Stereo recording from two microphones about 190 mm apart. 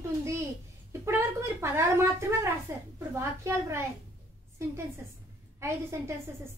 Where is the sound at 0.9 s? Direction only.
15° right (ahead or behind).